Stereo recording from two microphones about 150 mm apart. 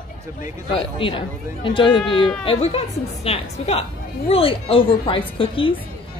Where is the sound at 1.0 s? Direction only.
35° left (ahead or behind).